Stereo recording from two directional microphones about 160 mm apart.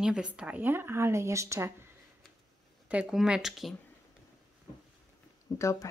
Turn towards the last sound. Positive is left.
turn(degrees=20)  # may be behind; listen again after turning